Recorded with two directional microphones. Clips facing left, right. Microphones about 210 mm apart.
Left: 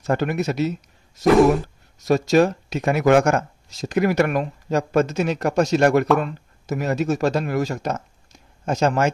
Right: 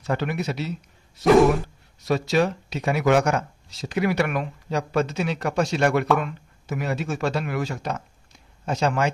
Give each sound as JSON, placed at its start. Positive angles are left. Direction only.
{"t": 0.0, "sound": "speech", "side_deg": 45}